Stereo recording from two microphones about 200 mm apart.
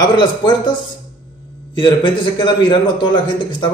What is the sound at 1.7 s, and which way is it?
Speech, 25° left (ahead or behind).